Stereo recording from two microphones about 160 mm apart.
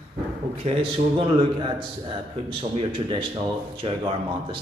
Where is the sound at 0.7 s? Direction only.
30° right (ahead or behind).